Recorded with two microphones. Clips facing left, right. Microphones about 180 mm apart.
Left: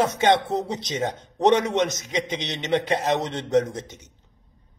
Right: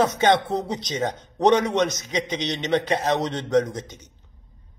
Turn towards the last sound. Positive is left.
turn(degrees=25)  # may be behind; listen again after turning